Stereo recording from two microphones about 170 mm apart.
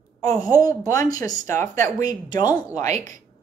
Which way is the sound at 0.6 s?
20° left (ahead or behind).